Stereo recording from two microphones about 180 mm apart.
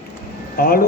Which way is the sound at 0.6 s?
55° left (ahead or behind).